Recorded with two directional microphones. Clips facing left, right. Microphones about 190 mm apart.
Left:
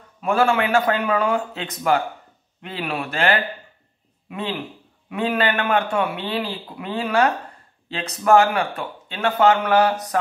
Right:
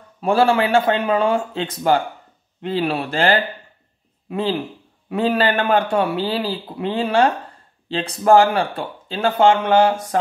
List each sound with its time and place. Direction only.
0.2 s speech: 30° right (ahead or behind)